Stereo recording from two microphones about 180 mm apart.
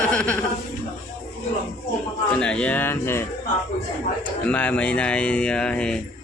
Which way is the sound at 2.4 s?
5° left (ahead or behind).